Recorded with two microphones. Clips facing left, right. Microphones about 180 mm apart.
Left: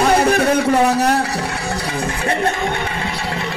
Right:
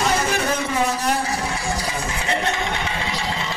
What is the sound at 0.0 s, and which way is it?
Music, 60° left (ahead or behind).